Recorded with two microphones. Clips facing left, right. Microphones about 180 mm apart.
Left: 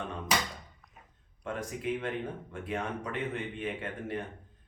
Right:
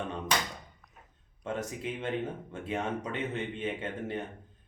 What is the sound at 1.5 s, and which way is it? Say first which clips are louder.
Speech: left 1 dB; 25° right (ahead or behind).